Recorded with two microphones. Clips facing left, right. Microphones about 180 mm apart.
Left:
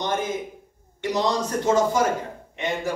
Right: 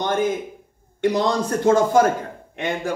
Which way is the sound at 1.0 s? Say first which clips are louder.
Right 4 dB; 55° right (ahead or behind).